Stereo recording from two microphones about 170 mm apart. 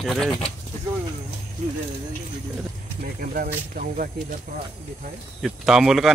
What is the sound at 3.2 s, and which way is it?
Speech, 55° right (ahead or behind).